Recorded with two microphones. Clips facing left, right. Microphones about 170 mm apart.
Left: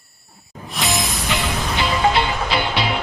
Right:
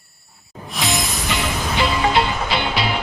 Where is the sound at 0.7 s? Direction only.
Centre (ahead or behind).